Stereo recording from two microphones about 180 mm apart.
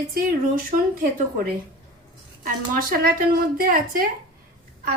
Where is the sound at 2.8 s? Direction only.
55° right (ahead or behind).